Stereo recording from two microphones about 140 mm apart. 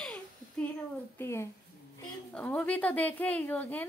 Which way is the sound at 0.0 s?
10° left (ahead or behind).